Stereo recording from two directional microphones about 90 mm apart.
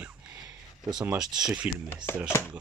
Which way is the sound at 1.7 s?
20° right (ahead or behind).